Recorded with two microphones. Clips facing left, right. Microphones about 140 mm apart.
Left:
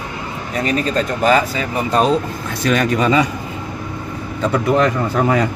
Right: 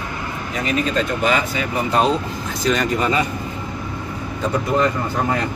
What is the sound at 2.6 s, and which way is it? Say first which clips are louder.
Speech: left 3 dB; 60° left (ahead or behind).